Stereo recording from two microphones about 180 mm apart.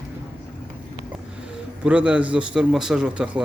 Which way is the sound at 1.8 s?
5° right (ahead or behind).